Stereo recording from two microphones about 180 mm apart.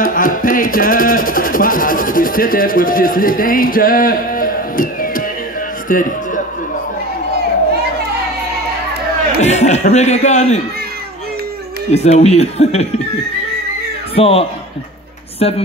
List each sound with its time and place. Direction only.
0.0 s music: 50° left (ahead or behind)
5.9 s speech: 50° left (ahead or behind)
9.4 s speech: 40° left (ahead or behind)
11.9 s speech: 35° left (ahead or behind)
14.1 s speech: 30° left (ahead or behind)